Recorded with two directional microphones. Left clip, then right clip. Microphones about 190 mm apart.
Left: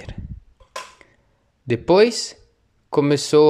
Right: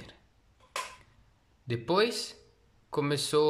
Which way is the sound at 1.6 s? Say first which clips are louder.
Left 13 dB; 35° left (ahead or behind).